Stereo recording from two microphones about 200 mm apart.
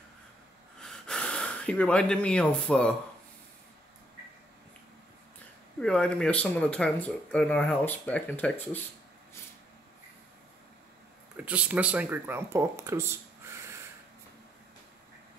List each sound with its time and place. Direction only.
0.7 s gasp: 5° left (ahead or behind)
5.8 s speech: 5° left (ahead or behind)
11.3 s speech: 5° right (ahead or behind)